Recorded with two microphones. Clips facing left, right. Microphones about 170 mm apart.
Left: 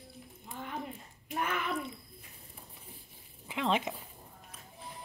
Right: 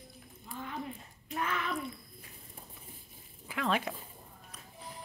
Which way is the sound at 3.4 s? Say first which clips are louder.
Left 1 dB; 20° left (ahead or behind).